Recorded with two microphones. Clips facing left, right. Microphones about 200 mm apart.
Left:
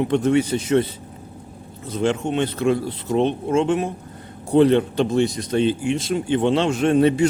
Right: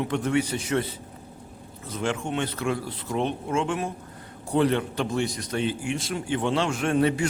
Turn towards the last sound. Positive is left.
turn(degrees=20)  # may be behind; listen again after turning